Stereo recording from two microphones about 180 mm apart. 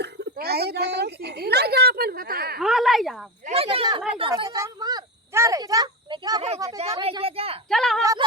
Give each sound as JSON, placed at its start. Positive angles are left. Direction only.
{"t": 0.0, "sound": "a woman's voice", "side_deg": -60}
{"t": 2.6, "sound": "a woman's voice", "side_deg": 0}
{"t": 3.4, "sound": "speech", "side_deg": -30}
{"t": 7.0, "sound": "speech", "side_deg": -30}
{"t": 7.7, "sound": "a woman's voice", "side_deg": 0}
{"t": 8.0, "sound": "a sound", "side_deg": -20}